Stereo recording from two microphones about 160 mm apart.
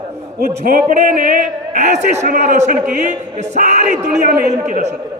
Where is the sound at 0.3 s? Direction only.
60° right (ahead or behind).